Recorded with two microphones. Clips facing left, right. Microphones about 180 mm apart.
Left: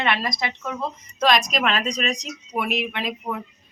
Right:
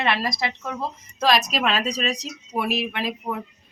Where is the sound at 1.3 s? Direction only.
5° right (ahead or behind).